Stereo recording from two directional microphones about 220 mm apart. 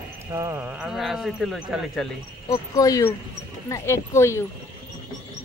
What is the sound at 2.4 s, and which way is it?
Speech, 15° left (ahead or behind).